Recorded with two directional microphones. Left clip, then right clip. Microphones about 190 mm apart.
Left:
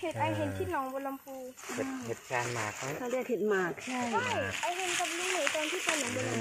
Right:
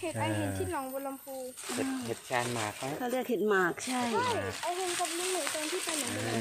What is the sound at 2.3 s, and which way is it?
Speech, 65° right (ahead or behind).